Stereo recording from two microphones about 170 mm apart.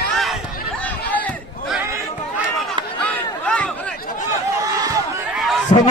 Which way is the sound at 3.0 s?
10° left (ahead or behind).